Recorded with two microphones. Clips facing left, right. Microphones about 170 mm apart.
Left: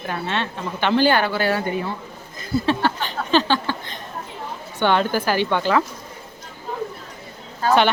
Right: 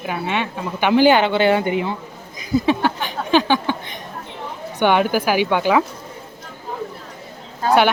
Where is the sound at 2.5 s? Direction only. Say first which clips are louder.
Right 3 dB; 15° right (ahead or behind).